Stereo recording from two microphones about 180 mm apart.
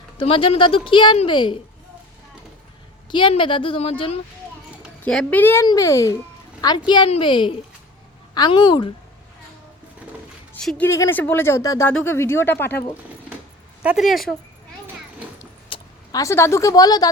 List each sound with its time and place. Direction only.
0.2 s a woman's voice: 30° left (ahead or behind)
3.1 s a woman's voice: 25° left (ahead or behind)
5.0 s a woman's voice: 5° left (ahead or behind); by 8.9 s 25° left (ahead or behind)
10.5 s speech: 5° left (ahead or behind)
13.8 s speech: centre (ahead or behind)
15.7 s speech: 20° left (ahead or behind)